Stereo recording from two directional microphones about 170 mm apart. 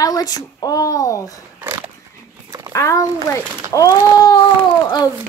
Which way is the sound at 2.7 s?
15° left (ahead or behind).